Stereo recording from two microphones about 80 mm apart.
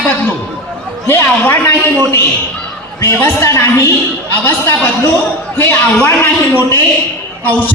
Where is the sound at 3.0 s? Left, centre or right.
Left.